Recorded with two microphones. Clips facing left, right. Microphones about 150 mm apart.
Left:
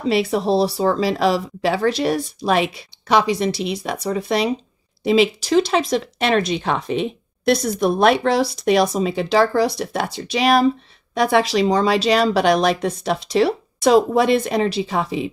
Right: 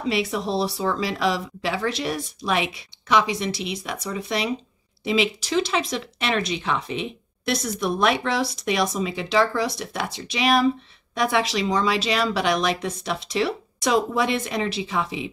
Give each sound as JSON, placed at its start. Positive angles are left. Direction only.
{"t": 0.0, "sound": "speech", "side_deg": 35}